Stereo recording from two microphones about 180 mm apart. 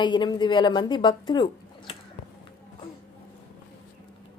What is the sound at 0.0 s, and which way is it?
A woman's voice, 25° left (ahead or behind).